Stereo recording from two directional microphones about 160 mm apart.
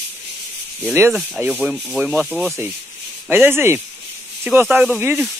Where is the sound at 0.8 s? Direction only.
10° right (ahead or behind).